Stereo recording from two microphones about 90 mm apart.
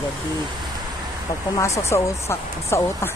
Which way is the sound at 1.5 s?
35° left (ahead or behind).